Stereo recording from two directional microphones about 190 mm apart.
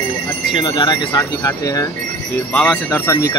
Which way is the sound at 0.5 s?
25° left (ahead or behind).